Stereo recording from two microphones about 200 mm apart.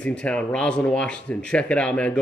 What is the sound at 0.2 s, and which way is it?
Speech, 5° left (ahead or behind).